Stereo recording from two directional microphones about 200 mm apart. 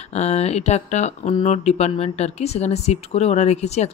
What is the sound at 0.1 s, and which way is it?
Speech, 30° left (ahead or behind).